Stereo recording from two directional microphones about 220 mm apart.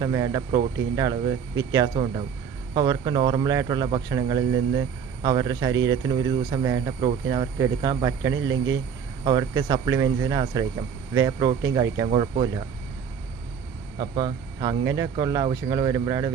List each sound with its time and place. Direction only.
0.0 s speech: 15° right (ahead or behind)
14.0 s speech: 15° right (ahead or behind)